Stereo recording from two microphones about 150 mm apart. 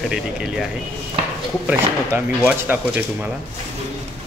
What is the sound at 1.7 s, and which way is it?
Speech, 10° right (ahead or behind).